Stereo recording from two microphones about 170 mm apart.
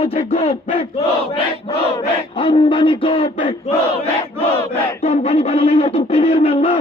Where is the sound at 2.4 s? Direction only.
30° left (ahead or behind).